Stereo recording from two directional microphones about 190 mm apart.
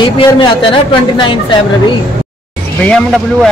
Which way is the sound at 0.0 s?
25° left (ahead or behind).